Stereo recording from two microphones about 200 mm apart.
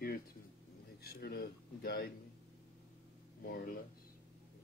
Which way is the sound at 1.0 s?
55° left (ahead or behind).